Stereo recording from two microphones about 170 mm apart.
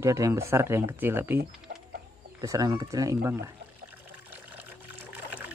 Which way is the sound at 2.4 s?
20° right (ahead or behind).